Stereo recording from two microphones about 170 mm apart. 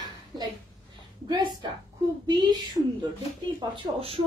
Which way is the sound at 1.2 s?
25° right (ahead or behind).